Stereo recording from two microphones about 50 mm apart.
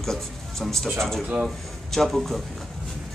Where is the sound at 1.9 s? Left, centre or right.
Centre.